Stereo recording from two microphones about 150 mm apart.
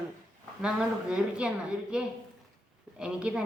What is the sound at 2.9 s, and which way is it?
Speech, 5° right (ahead or behind).